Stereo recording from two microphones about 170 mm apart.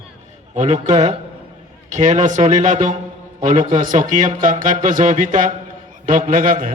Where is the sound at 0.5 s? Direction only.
45° right (ahead or behind).